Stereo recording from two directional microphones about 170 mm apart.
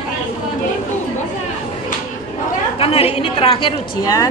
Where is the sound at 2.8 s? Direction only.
35° left (ahead or behind).